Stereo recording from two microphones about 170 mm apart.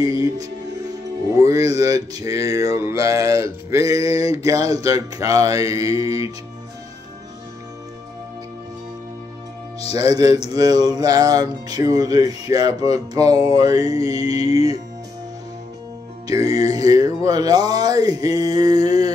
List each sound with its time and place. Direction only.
0.0 s speech: 20° right (ahead or behind)
1.8 s speech: 20° right (ahead or behind)
10.1 s speech: 20° right (ahead or behind)
16.4 s speech: 20° right (ahead or behind)